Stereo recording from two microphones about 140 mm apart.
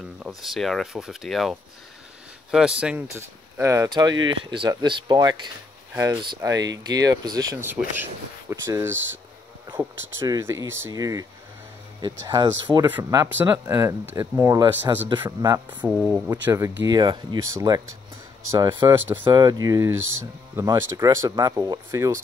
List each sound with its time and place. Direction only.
0.4 s speech: centre (ahead or behind)
3.2 s speech: 20° right (ahead or behind)
7.6 s speech: 15° right (ahead or behind)
10.4 s speech: 20° right (ahead or behind)
12.7 s speech: 10° right (ahead or behind)
13.1 s speech: 25° right (ahead or behind)
15.8 s speech: 5° right (ahead or behind)
16.3 s speech: 20° right (ahead or behind)
18.9 s speech: 15° right (ahead or behind)
19.2 s speech: 30° right (ahead or behind)